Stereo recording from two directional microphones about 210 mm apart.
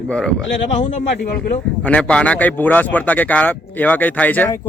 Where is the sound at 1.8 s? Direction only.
5° left (ahead or behind).